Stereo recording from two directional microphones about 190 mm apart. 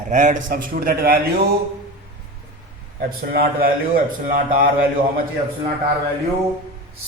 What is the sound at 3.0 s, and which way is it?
A man's voice, 55° right (ahead or behind).